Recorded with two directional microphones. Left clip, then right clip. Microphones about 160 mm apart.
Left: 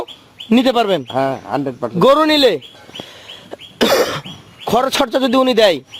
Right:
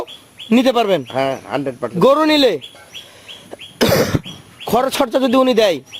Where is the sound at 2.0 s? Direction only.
5° right (ahead or behind).